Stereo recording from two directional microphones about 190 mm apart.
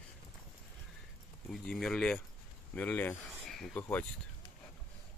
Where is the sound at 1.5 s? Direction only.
5° left (ahead or behind).